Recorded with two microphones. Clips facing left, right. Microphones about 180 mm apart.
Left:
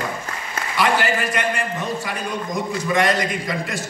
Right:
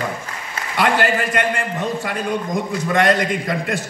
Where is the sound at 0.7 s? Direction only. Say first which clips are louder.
Right 2 dB; 60° right (ahead or behind).